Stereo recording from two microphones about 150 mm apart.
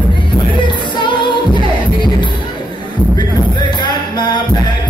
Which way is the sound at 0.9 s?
30° left (ahead or behind).